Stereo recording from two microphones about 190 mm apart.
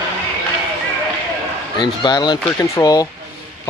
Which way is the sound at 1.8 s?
20° left (ahead or behind).